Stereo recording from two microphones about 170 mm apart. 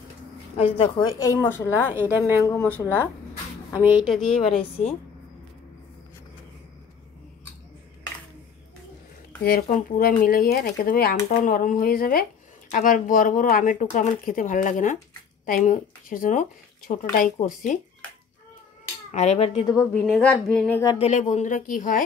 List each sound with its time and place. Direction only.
0.6 s a woman's voice: 35° left (ahead or behind)
1.2 s speech: 15° left (ahead or behind)
2.0 s a woman's voice: 10° right (ahead or behind)
2.5 s speech: 10° left (ahead or behind)
3.8 s a woman's voice: 5° right (ahead or behind)
9.4 s speech: 60° left (ahead or behind)
19.1 s a woman's voice: 40° left (ahead or behind)
19.6 s a woman's voice: 20° left (ahead or behind)
19.9 s speech: 5° left (ahead or behind)
21.0 s speech: 45° left (ahead or behind)